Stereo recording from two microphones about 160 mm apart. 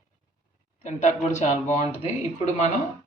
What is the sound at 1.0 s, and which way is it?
Speech, 50° left (ahead or behind).